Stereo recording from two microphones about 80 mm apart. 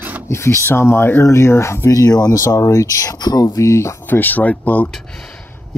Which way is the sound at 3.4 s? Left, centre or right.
Left.